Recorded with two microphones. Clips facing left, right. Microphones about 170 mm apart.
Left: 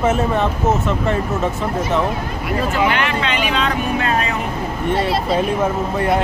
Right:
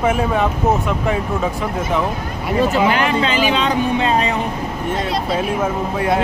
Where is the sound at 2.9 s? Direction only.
35° right (ahead or behind).